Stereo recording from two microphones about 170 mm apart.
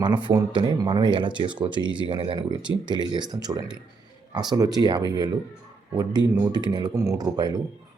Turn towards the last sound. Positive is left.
turn(degrees=-25)  # may be behind; listen again after turning